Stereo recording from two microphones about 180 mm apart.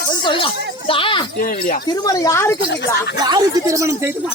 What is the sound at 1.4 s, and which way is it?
Speech, 55° left (ahead or behind).